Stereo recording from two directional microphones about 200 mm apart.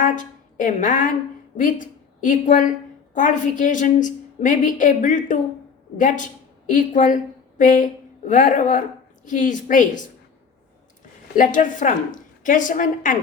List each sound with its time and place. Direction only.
0.0 s a sound: 40° left (ahead or behind)
1.5 s a woman's voice: 40° left (ahead or behind)
11.3 s a woman's voice: 40° left (ahead or behind)